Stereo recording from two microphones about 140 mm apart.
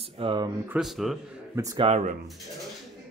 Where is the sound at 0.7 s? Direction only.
Centre (ahead or behind).